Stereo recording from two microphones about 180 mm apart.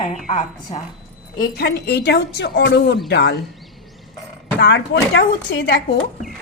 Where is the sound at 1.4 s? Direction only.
70° left (ahead or behind).